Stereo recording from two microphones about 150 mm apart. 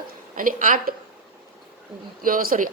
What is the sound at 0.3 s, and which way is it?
Speech, 65° right (ahead or behind).